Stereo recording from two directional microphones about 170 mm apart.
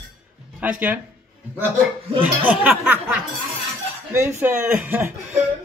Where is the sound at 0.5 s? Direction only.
10° right (ahead or behind).